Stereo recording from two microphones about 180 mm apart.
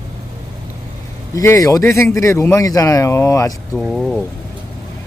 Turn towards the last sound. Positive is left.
turn(degrees=0)  # may be behind; listen again after turning